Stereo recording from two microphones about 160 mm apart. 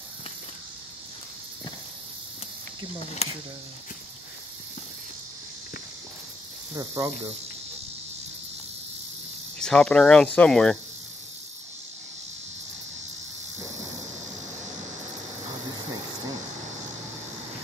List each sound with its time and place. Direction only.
3.2 s speech: 40° left (ahead or behind)
6.7 s speech: 20° right (ahead or behind)
9.6 s speech: 5° left (ahead or behind)